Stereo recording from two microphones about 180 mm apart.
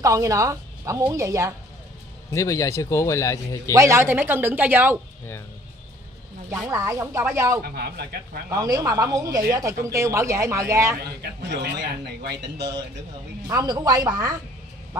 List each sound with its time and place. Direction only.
0.0 s speech: 20° right (ahead or behind)
2.3 s speech: 15° left (ahead or behind)
3.7 s speech: 15° right (ahead or behind)
6.5 s speech: 15° right (ahead or behind)
7.6 s speech: 60° right (ahead or behind)
8.5 s speech: 20° right (ahead or behind)
11.0 s speech: 65° right (ahead or behind)
13.5 s speech: 20° right (ahead or behind)